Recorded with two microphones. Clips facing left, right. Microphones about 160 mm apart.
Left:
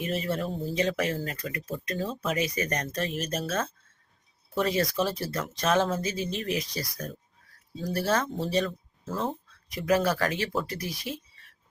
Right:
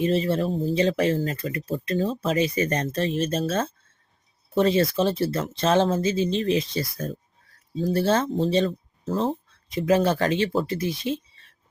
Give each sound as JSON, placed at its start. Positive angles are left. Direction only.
{"t": 0.0, "sound": "speech", "side_deg": -30}